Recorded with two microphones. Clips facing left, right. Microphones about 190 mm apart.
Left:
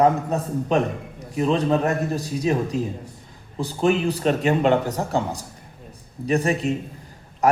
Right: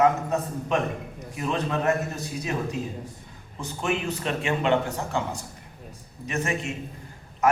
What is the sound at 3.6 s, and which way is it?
A man's voice, 35° left (ahead or behind).